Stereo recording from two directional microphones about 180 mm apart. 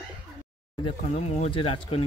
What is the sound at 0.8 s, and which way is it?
Speech, 30° left (ahead or behind).